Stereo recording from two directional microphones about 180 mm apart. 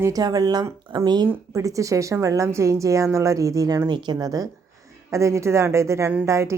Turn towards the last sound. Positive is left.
turn(degrees=-15)  # may be behind; listen again after turning